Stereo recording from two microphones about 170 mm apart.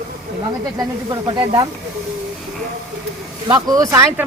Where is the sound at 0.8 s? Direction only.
20° right (ahead or behind).